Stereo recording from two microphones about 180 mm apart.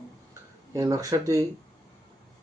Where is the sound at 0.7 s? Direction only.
20° right (ahead or behind).